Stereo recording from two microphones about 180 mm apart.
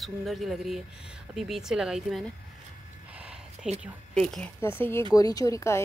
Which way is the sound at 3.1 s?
5° right (ahead or behind).